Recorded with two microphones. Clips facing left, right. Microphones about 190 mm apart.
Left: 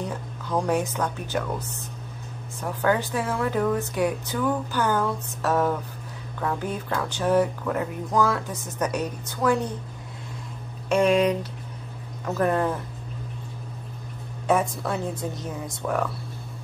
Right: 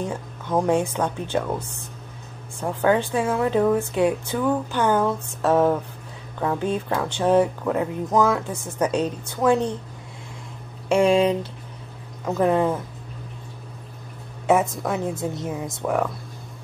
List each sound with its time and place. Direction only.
0.0 s speech: 25° right (ahead or behind)
2.6 s speech: 25° right (ahead or behind)
10.9 s speech: 30° right (ahead or behind)
12.3 s speech: 15° right (ahead or behind)
14.5 s speech: 20° right (ahead or behind)